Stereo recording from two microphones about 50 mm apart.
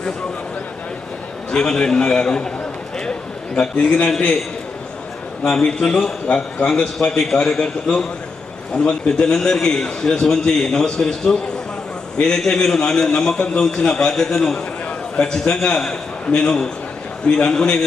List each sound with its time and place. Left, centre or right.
1.5 s a man's voice: centre
3.1 s a sound: centre
5.4 s a man's voice: centre
6.2 s a man's voice: left